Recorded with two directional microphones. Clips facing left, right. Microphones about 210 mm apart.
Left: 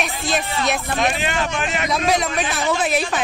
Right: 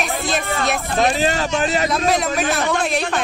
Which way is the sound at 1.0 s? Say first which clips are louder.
Right 7 dB; 40° right (ahead or behind).